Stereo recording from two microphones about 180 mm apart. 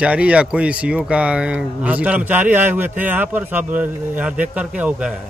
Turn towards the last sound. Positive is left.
turn(degrees=-5)  # may be behind; listen again after turning